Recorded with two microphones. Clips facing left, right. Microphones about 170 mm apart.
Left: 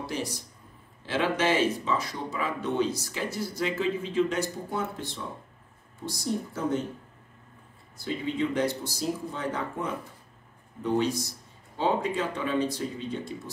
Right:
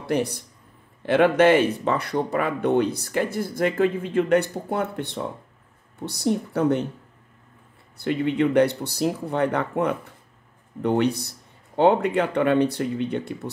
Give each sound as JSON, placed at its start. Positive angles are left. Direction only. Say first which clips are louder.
{"t": 0.0, "sound": "speech", "louder": "right 9 dB", "side_deg": -60}
{"t": 8.0, "sound": "speech", "louder": "right 7 dB", "side_deg": -65}